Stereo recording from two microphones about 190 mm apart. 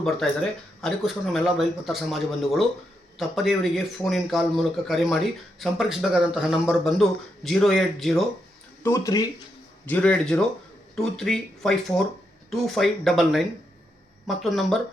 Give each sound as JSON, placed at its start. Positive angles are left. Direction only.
{"t": 0.8, "sound": "speech", "side_deg": 0}
{"t": 8.8, "sound": "speech", "side_deg": 15}
{"t": 9.8, "sound": "speech", "side_deg": 10}